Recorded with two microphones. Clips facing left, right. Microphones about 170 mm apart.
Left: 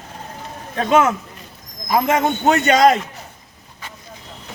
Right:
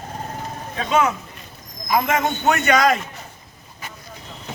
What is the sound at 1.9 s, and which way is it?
Speech, 30° left (ahead or behind).